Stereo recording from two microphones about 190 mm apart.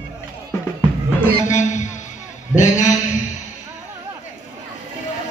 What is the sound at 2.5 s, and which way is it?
Speech, 40° left (ahead or behind).